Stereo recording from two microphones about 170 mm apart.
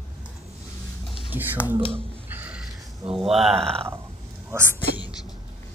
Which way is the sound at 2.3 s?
10° right (ahead or behind).